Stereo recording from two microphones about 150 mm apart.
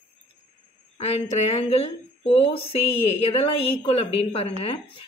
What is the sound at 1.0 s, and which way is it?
A woman's voice, 45° left (ahead or behind).